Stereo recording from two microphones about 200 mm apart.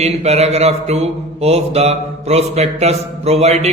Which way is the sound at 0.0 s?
30° right (ahead or behind).